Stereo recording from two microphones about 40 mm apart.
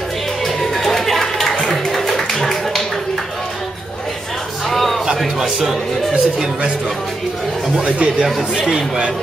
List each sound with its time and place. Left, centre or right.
0.6 s chatter: centre
1.7 s a sound: centre
4.6 s a sound: centre
5.4 s speech: centre
7.7 s speech: right
8.5 s speech: centre